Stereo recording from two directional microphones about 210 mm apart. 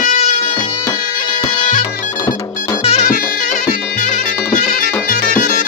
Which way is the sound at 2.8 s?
30° left (ahead or behind).